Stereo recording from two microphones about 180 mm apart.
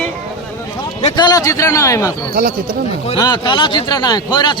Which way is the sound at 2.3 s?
55° right (ahead or behind).